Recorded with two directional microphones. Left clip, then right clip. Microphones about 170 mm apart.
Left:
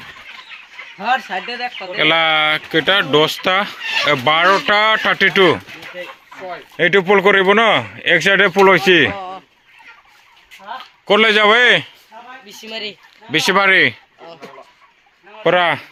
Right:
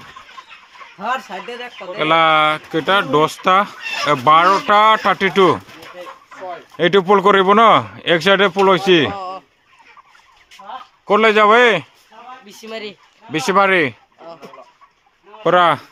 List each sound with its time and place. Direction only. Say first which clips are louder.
0.9 s speech: left 4 dB; 5° left (ahead or behind); by 5.5 s 15° right (ahead or behind)
6.7 s speech: even; 20° right (ahead or behind)
8.4 s speech: left 2 dB; 5° left (ahead or behind)
9.1 s a sound: right 1 dB; 10° right (ahead or behind)
11.0 s speech: even; 5° left (ahead or behind)
12.5 s speech: left 3 dB; 20° right (ahead or behind)
13.3 s speech: left 2 dB; centre (ahead or behind)
15.4 s speech: right 1 dB; 20° right (ahead or behind)